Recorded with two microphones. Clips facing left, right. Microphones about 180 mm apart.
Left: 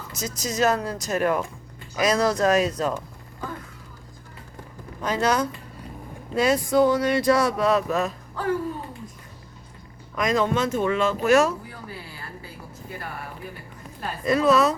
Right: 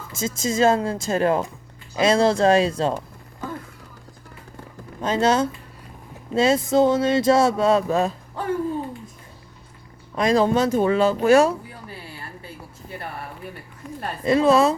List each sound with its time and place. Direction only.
0.1 s speech: 25° right (ahead or behind)
5.0 s speech: 25° right (ahead or behind)
10.2 s speech: 30° right (ahead or behind)
14.3 s speech: 25° right (ahead or behind)